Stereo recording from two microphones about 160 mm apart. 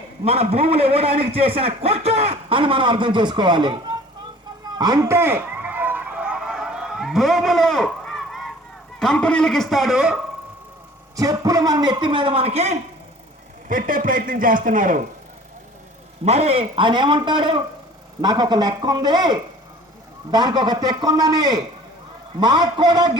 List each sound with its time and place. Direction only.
0.3 s a man's voice: 40° right (ahead or behind)
4.8 s a sound: 25° right (ahead or behind); by 8.4 s centre (ahead or behind)
9.0 s a man's voice: 5° left (ahead or behind)
11.2 s a man's voice: 20° right (ahead or behind); by 12.7 s 40° right (ahead or behind)
13.7 s a man's voice: 60° right (ahead or behind)
16.2 s a man's voice: 40° right (ahead or behind); by 23.1 s 25° right (ahead or behind)